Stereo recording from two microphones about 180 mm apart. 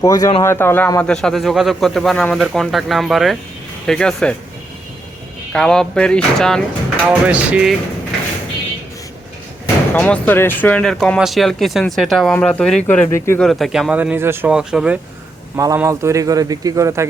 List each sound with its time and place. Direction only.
0.0 s speech: 20° left (ahead or behind)
5.5 s speech: 5° left (ahead or behind)
7.0 s speech: 10° right (ahead or behind)
9.9 s speech: 10° left (ahead or behind)
13.4 s speech: centre (ahead or behind)
15.5 s speech: 15° right (ahead or behind)